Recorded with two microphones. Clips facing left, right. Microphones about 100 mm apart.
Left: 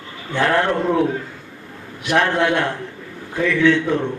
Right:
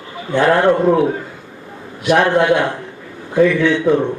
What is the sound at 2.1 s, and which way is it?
Speech, 15° right (ahead or behind).